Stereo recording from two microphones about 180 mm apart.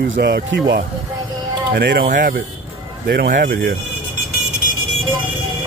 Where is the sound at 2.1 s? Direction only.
45° right (ahead or behind).